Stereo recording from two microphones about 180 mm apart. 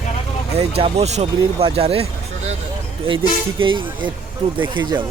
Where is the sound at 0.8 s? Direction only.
35° right (ahead or behind).